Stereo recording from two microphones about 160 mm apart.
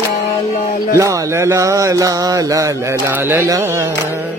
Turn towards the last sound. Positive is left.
turn(degrees=-20)  # may be behind; listen again after turning